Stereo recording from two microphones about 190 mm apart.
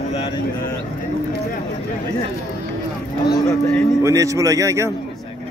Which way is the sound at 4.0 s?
15° right (ahead or behind).